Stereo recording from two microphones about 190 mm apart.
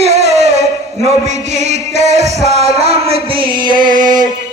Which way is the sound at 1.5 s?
35° right (ahead or behind).